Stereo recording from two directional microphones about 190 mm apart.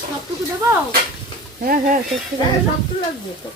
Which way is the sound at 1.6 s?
50° right (ahead or behind).